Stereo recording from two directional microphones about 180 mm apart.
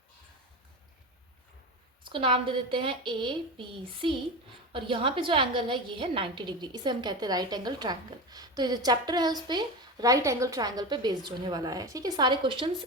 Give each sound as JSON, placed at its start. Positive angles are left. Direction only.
{"t": 2.0, "sound": "a woman's voice", "side_deg": -30}